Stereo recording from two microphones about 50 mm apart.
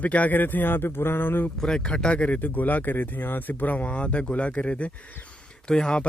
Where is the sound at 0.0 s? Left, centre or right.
Left.